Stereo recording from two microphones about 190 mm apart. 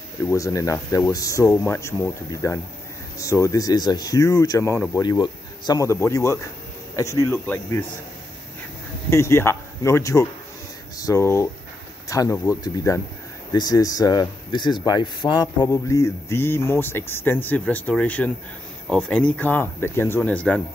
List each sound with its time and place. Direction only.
0.2 s speech: 15° left (ahead or behind)
9.1 s speech: 15° left (ahead or behind)